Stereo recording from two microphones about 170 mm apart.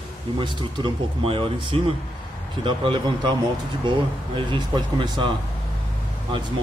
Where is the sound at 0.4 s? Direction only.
25° right (ahead or behind).